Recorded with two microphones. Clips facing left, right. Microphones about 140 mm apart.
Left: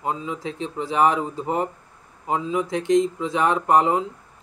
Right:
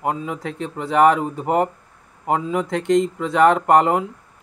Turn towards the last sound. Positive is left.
turn(degrees=-65)  # may be behind; listen again after turning